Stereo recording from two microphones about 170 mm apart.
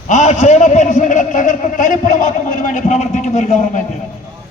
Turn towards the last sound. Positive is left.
turn(degrees=45)  # may be behind; listen again after turning